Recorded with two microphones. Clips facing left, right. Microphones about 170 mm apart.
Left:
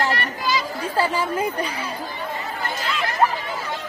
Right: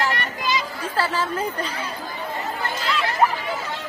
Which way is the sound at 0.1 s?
20° right (ahead or behind).